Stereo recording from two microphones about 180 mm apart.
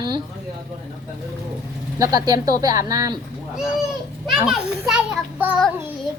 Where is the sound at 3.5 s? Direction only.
5° right (ahead or behind).